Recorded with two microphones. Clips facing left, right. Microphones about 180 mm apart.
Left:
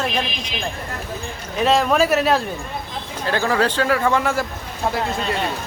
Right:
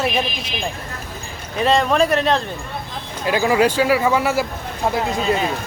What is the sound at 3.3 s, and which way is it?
Speech, 10° right (ahead or behind).